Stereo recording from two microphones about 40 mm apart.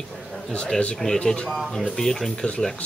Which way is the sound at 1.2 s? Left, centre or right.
Left.